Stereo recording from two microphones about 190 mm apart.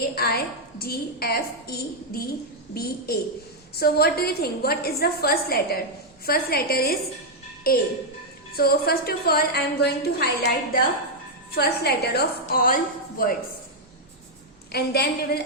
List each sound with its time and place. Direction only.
0.2 s a woman's voice: 55° left (ahead or behind)
2.7 s a woman's voice: 55° left (ahead or behind)
14.7 s a woman's voice: 55° left (ahead or behind)